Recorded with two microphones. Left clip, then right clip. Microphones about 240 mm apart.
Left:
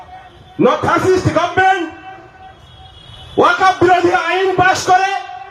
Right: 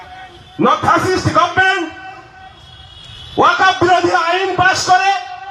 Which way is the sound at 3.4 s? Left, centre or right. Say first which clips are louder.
Even; right.